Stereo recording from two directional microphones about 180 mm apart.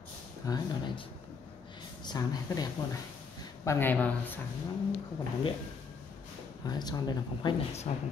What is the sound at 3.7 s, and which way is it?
Speech, 10° left (ahead or behind).